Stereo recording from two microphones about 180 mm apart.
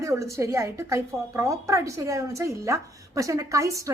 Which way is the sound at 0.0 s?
15° right (ahead or behind).